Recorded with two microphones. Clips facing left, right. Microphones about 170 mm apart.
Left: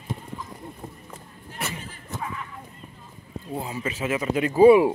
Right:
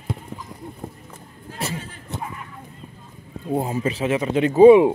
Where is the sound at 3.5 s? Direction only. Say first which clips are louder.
Right 8 dB; 45° right (ahead or behind); by 4.8 s 20° right (ahead or behind).